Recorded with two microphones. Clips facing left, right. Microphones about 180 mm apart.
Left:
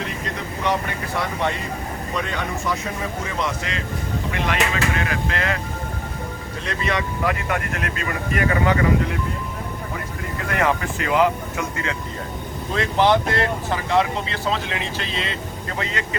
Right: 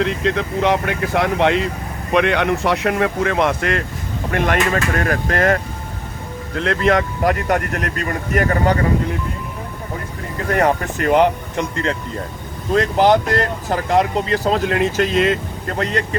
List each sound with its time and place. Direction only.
0.0 s speech: 90° right
2.1 s speech: 75° right (ahead or behind); by 5.5 s 50° right (ahead or behind)
6.6 s speech: 55° right (ahead or behind); by 8.8 s 40° right (ahead or behind)
10.5 s speech: 40° right (ahead or behind)
12.7 s speech: 40° right (ahead or behind)